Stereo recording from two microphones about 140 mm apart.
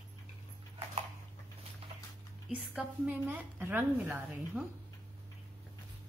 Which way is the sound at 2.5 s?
10° right (ahead or behind).